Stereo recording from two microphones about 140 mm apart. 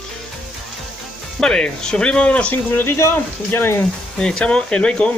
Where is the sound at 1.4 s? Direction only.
5° left (ahead or behind).